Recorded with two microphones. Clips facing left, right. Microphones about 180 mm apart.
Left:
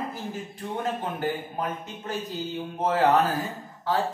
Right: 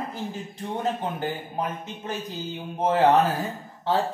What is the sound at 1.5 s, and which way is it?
Speech, 20° right (ahead or behind).